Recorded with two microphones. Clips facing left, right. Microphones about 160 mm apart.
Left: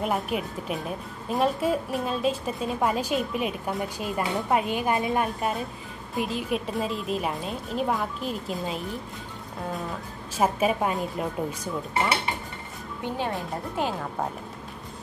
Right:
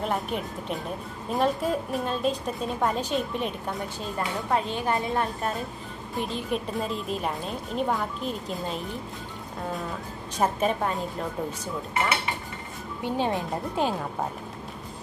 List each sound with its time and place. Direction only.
0.0 s a woman's voice: 5° left (ahead or behind)
10.3 s a woman's voice: 5° left (ahead or behind)
13.2 s speech: 20° right (ahead or behind)